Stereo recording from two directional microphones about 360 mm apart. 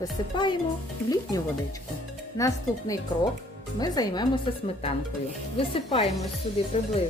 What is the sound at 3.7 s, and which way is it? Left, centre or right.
Speech, centre.